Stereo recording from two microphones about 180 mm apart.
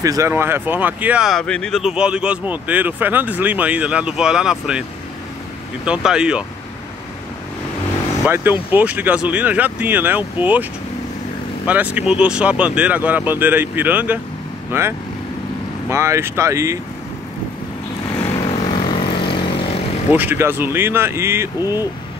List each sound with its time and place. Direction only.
0.0 s speech: 15° right (ahead or behind)
5.9 s speech: 5° right (ahead or behind)
8.3 s speech: 10° right (ahead or behind)
18.2 s vehicle: 35° left (ahead or behind)
20.1 s speech: 10° right (ahead or behind)